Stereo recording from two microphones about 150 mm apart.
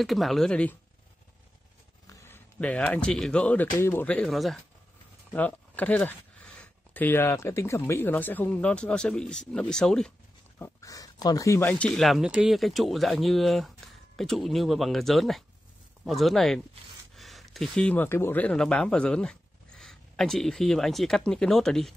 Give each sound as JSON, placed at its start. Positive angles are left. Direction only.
{"t": 0.0, "sound": "speech", "side_deg": 0}
{"t": 2.0, "sound": "speech", "side_deg": 15}
{"t": 10.6, "sound": "speech", "side_deg": 20}
{"t": 11.9, "sound": "speech", "side_deg": 0}